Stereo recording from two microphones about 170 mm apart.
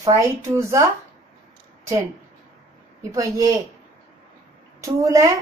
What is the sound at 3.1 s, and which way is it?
Speech, 20° right (ahead or behind).